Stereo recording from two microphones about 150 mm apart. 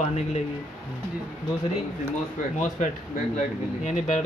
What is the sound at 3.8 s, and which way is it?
Speech, 50° left (ahead or behind).